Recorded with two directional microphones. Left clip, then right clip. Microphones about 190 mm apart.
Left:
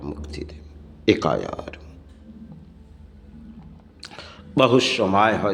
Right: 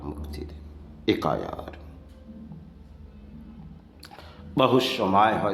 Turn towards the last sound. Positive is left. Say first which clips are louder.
# left 2 dB
turn(degrees=15)  # may be behind; listen again after turning